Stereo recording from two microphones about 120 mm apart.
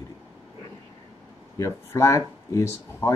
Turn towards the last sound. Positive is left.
turn(degrees=20)  # may be behind; listen again after turning